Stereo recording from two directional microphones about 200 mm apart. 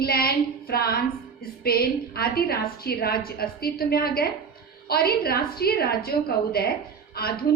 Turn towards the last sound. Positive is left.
turn(degrees=50)  # may be behind; listen again after turning